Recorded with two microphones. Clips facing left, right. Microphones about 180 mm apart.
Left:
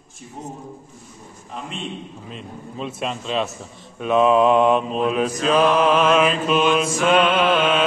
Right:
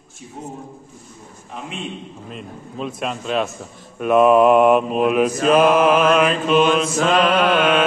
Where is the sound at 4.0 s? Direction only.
5° right (ahead or behind).